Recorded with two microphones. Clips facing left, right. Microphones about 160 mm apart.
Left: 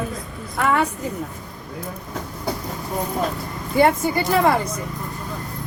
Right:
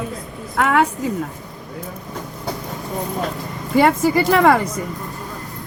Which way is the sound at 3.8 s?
90° right.